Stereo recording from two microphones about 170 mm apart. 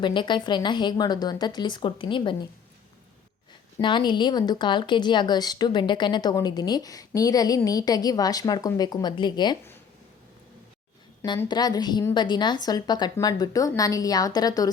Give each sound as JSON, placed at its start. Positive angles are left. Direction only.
{"t": 0.0, "sound": "speech", "side_deg": 25}
{"t": 3.8, "sound": "speech", "side_deg": 30}
{"t": 11.4, "sound": "speech", "side_deg": 25}